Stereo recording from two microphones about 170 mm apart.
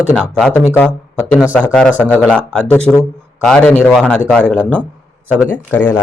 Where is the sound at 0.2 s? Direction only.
5° left (ahead or behind).